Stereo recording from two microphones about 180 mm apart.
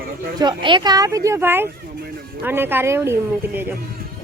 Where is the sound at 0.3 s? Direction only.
25° right (ahead or behind).